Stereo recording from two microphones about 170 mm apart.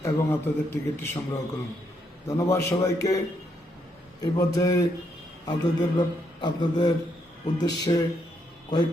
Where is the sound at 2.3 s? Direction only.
15° left (ahead or behind).